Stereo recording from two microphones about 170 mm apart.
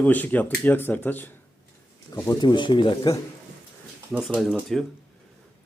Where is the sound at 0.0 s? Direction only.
10° left (ahead or behind); by 3.2 s 25° left (ahead or behind).